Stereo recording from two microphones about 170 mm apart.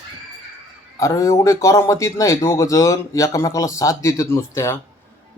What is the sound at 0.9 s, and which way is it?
A man's voice, 15° left (ahead or behind).